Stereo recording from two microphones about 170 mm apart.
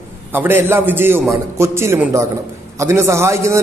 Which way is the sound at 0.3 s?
10° right (ahead or behind).